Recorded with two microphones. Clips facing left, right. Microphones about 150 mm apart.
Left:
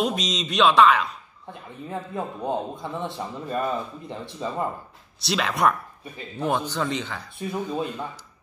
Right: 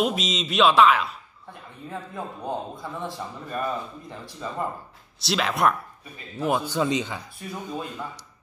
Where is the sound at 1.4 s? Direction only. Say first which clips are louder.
Left 4 dB; 20° left (ahead or behind).